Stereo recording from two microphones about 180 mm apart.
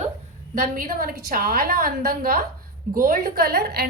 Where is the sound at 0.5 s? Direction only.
50° right (ahead or behind).